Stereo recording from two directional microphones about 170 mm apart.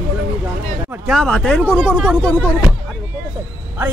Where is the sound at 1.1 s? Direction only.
5° left (ahead or behind).